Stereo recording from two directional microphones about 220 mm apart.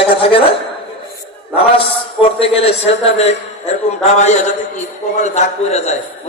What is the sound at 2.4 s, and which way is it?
A man's voice, 25° left (ahead or behind).